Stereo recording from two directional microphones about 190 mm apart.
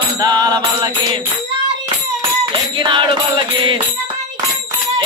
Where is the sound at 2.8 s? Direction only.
25° right (ahead or behind).